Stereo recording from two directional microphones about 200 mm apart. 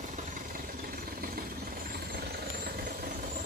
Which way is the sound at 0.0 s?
40° right (ahead or behind).